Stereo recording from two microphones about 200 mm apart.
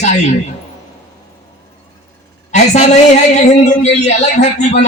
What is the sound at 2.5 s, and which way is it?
Speech, 35° left (ahead or behind).